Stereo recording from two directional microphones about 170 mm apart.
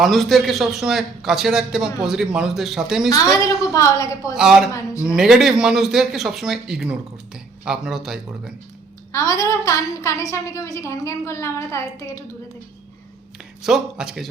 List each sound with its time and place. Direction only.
0.0 s a man's voice: centre (ahead or behind)
3.4 s a woman's voice: 20° left (ahead or behind)
4.4 s a man's voice: 5° right (ahead or behind)
9.1 s a woman's voice: 20° left (ahead or behind)
13.6 s a man's voice: 5° right (ahead or behind)